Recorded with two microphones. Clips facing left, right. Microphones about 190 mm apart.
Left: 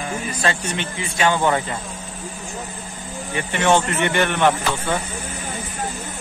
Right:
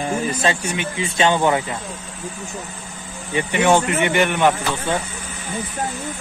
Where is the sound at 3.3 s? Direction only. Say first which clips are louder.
Right 2 dB; 15° right (ahead or behind).